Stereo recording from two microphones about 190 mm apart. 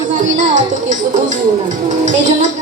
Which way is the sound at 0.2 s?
40° right (ahead or behind).